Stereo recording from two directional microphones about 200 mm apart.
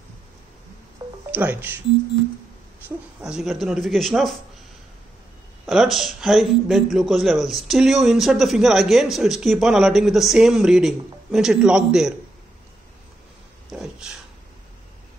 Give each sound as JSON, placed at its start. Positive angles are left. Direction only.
{"t": 1.0, "sound": "music", "side_deg": -15}
{"t": 1.3, "sound": "speech", "side_deg": -10}
{"t": 3.2, "sound": "a man's voice", "side_deg": -5}
{"t": 5.7, "sound": "a man's voice", "side_deg": 0}
{"t": 13.7, "sound": "a sound", "side_deg": -5}